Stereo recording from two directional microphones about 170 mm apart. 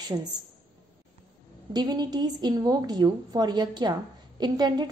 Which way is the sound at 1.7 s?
25° right (ahead or behind).